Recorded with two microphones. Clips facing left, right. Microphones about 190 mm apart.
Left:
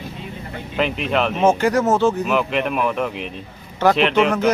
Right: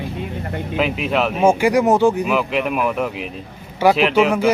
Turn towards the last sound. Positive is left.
turn(degrees=-10)  # may be behind; listen again after turning